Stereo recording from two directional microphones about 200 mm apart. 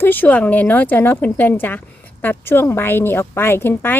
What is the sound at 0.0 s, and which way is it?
A woman's voice, 10° left (ahead or behind).